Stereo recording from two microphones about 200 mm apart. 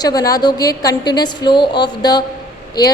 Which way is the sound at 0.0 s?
20° left (ahead or behind).